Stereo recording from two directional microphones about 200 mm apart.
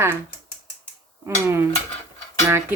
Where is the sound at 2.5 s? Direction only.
15° right (ahead or behind).